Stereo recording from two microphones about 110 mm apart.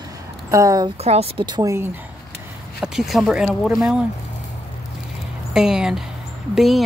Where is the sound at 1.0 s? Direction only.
70° right (ahead or behind).